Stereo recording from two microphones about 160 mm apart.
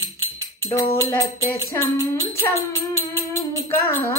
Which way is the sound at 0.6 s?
30° left (ahead or behind).